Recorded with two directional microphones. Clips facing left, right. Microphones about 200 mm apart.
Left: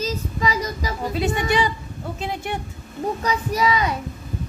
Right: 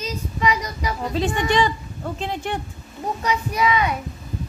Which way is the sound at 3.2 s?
35° left (ahead or behind).